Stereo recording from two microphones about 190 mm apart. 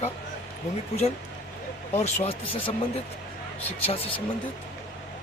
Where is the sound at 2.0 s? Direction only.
30° left (ahead or behind).